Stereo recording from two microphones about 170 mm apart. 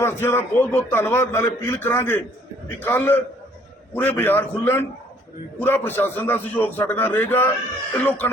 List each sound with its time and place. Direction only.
0.0 s a man's voice: 15° left (ahead or behind)